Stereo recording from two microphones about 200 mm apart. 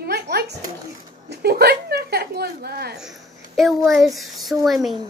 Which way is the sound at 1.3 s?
50° right (ahead or behind).